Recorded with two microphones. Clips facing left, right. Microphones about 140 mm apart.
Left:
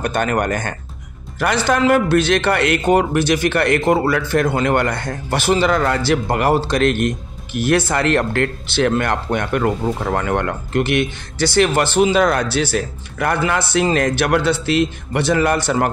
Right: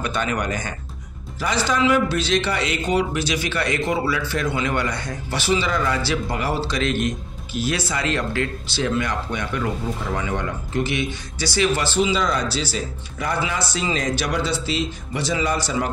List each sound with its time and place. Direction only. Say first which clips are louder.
0.0 s a man's voice: left 5 dB; 50° left (ahead or behind)